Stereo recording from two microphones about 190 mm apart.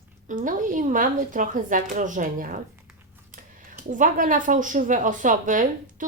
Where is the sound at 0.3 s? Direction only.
45° right (ahead or behind).